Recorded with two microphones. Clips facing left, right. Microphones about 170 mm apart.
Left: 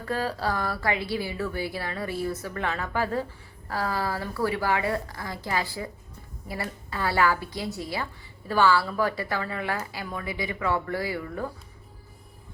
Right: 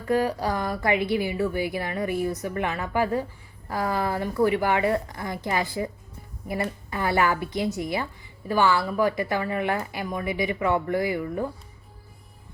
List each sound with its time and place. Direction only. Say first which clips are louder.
0.1 s a woman's voice: right 5 dB; 15° right (ahead or behind)